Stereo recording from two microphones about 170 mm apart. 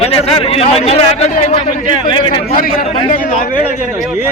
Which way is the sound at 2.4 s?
60° left (ahead or behind).